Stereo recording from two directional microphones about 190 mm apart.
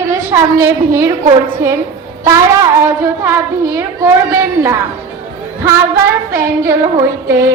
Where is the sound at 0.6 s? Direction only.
15° right (ahead or behind).